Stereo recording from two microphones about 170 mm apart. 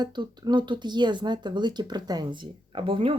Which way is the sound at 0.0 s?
25° right (ahead or behind).